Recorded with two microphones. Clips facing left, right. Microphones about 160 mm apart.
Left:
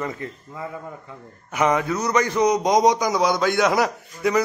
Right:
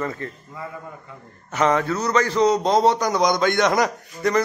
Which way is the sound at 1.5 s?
10° left (ahead or behind).